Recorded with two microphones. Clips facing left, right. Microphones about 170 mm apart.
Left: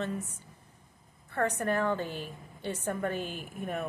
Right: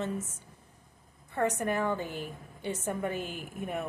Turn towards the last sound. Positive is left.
turn(degrees=-15)  # may be behind; listen again after turning